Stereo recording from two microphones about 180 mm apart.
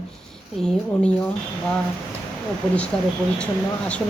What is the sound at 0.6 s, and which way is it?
Speech, 5° left (ahead or behind).